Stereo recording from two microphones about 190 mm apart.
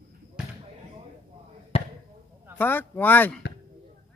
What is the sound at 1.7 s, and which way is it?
Basketball bounce, 30° left (ahead or behind).